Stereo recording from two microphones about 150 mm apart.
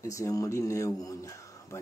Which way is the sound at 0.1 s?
20° left (ahead or behind).